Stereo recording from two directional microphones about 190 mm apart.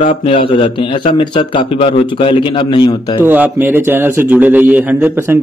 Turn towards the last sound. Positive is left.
turn(degrees=-10)  # may be behind; listen again after turning